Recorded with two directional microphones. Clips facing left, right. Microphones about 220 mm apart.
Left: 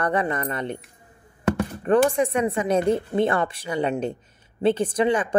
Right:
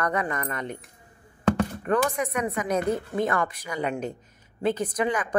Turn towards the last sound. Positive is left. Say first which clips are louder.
# left 5 dB
turn(degrees=30)  # may be behind; listen again after turning